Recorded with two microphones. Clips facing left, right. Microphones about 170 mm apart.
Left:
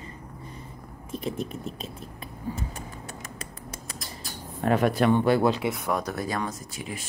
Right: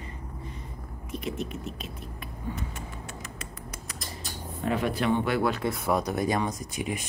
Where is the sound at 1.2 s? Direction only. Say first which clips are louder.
Left 2 dB; 30° left (ahead or behind).